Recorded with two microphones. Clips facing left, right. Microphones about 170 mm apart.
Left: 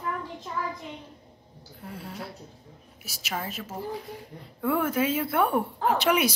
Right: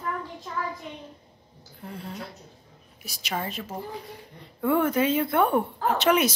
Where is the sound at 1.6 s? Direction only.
5° left (ahead or behind).